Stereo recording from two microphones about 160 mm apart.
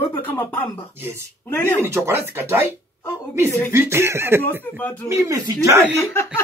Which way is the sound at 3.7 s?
15° right (ahead or behind).